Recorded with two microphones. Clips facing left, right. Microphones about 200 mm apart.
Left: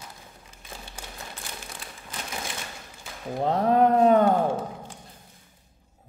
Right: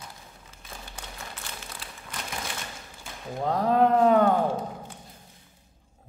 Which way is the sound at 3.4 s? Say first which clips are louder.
Left 2 dB; 25° left (ahead or behind).